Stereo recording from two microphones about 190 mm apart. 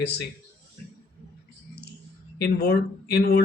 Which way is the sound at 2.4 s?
55° left (ahead or behind).